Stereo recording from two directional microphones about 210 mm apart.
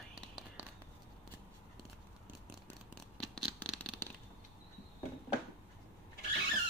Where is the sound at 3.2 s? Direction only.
Centre (ahead or behind).